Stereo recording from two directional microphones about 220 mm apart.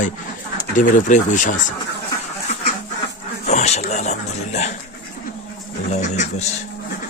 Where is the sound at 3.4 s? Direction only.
30° left (ahead or behind).